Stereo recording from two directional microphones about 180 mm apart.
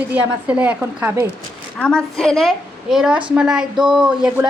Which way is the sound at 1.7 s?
5° left (ahead or behind).